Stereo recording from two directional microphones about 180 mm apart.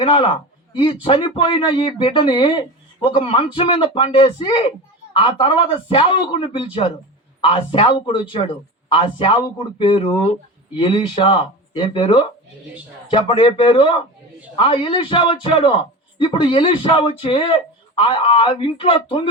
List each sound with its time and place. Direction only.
0.0 s speech: 30° left (ahead or behind)